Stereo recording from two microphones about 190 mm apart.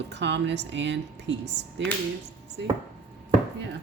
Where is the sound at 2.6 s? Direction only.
65° right (ahead or behind).